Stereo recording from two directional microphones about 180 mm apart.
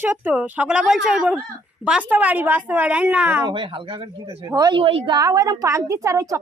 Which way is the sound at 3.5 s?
25° right (ahead or behind).